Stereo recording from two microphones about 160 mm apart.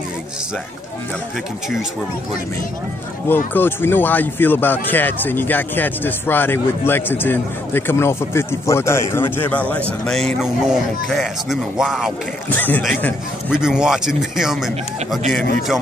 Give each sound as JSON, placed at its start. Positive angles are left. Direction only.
{"t": 3.5, "sound": "a man's voice", "side_deg": 15}
{"t": 12.4, "sound": "a man's voice", "side_deg": 10}
{"t": 12.8, "sound": "a man's voice", "side_deg": 0}